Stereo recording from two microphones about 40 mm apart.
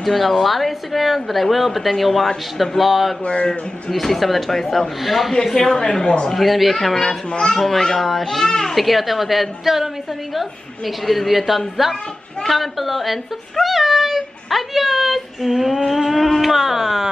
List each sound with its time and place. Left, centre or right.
0.0 s a child's voice: centre
5.8 s speech: left
6.2 s speech: centre
7.0 s a child's voice: centre
8.7 s speech: centre
11.1 s speech: centre